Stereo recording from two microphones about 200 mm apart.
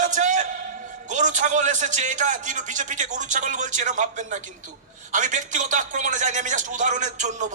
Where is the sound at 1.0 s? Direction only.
40° right (ahead or behind).